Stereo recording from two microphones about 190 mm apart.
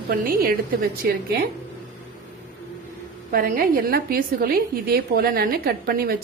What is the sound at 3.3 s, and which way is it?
A woman's voice, 50° right (ahead or behind).